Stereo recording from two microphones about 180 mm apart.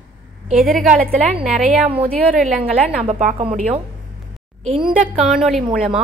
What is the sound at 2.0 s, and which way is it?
A woman's voice, 50° right (ahead or behind).